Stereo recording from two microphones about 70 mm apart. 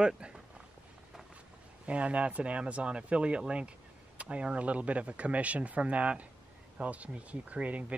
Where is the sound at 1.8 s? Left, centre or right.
Centre.